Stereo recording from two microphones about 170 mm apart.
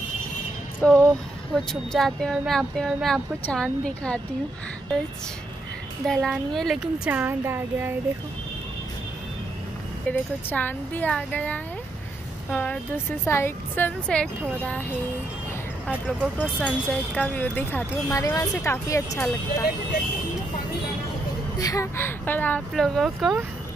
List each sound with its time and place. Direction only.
0.7 s speech: 5° left (ahead or behind)
6.0 s speech: centre (ahead or behind)
10.1 s a woman's voice: 10° left (ahead or behind)
15.9 s speech: 5° right (ahead or behind)
16.5 s a woman's voice: 5° left (ahead or behind)
18.1 s a woman's voice: 20° left (ahead or behind)
21.5 s a woman's voice: 20° left (ahead or behind); by 23.4 s centre (ahead or behind)